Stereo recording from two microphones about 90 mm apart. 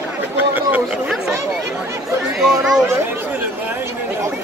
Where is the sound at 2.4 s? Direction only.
5° right (ahead or behind).